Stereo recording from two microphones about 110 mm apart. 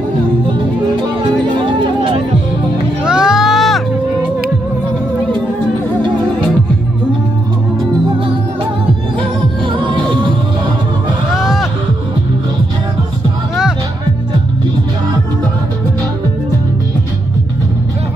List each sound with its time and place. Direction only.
0.5 s music: 45° right (ahead or behind)
3.0 s music: 5° right (ahead or behind)
9.2 s music: 50° right (ahead or behind)
11.3 s music: 5° right (ahead or behind)